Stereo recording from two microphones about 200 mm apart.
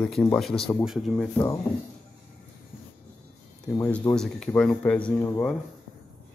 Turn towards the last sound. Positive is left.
turn(degrees=10)  # may be behind; listen again after turning